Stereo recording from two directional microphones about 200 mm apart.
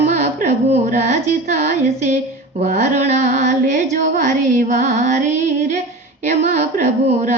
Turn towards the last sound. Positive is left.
turn(degrees=-35)  # may be behind; listen again after turning